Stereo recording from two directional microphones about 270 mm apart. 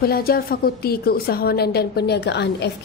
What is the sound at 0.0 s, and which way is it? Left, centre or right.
A woman's voice, left.